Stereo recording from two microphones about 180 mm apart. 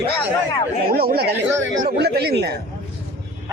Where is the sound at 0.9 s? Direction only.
60° right (ahead or behind).